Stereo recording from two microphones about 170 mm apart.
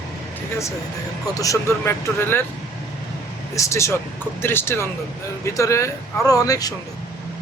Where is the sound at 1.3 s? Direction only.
20° left (ahead or behind).